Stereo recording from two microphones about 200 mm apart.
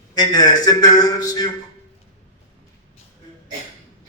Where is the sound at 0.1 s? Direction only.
20° left (ahead or behind).